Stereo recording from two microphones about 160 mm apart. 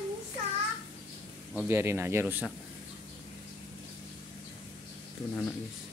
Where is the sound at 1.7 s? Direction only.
15° right (ahead or behind).